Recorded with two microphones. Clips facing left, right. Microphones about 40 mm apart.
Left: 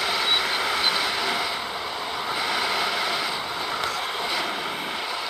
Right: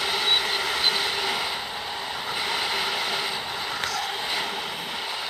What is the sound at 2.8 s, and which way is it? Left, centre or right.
Vehicle, centre.